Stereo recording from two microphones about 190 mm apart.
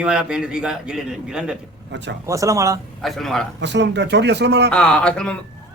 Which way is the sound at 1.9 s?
70° right (ahead or behind).